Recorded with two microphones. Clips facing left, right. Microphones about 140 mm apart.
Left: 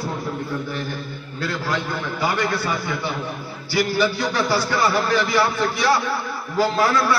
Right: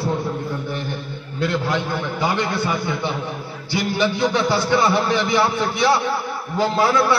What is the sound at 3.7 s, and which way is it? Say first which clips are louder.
A man's voice: left 1 dB; 20° right (ahead or behind).